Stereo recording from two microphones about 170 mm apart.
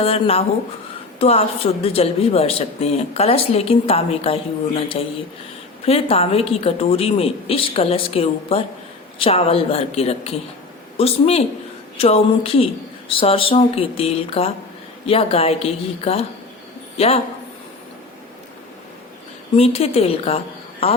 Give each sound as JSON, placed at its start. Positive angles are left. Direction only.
{"t": 0.0, "sound": "speech", "side_deg": 35}
{"t": 19.5, "sound": "speech", "side_deg": 35}